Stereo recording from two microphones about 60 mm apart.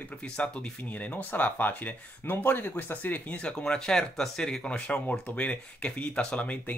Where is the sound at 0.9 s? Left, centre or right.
Left.